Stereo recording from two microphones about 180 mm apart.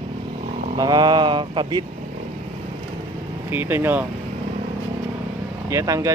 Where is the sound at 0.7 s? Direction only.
20° right (ahead or behind).